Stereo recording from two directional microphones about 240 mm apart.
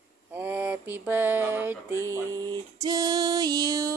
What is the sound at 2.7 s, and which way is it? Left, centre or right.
Mantra, centre.